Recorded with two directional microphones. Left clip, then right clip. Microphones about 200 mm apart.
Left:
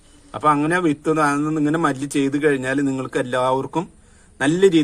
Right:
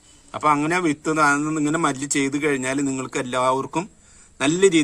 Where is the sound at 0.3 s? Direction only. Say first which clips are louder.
Left 2 dB; 20° right (ahead or behind).